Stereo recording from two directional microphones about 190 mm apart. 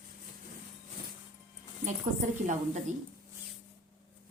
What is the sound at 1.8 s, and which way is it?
A woman's voice, 40° right (ahead or behind).